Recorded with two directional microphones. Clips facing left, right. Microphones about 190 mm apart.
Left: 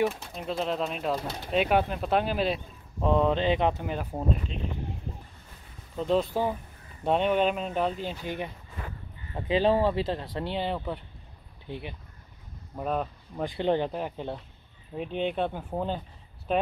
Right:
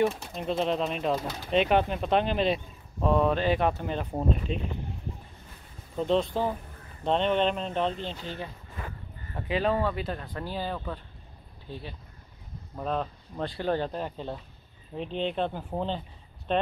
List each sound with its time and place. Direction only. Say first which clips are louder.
0.3 s speech: right 2 dB; centre (ahead or behind)
3.0 s speech: even; 20° left (ahead or behind)
5.9 s speech: even; 5° left (ahead or behind)
9.3 s speech: left 3 dB; 30° left (ahead or behind)
12.7 s speech: left 1 dB; 10° left (ahead or behind)